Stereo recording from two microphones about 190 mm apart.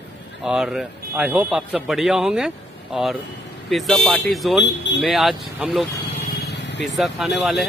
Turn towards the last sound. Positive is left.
turn(degrees=0)  # may be behind; listen again after turning